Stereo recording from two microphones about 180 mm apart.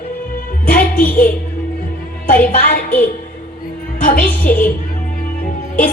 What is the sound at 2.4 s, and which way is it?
Speech, 50° left (ahead or behind).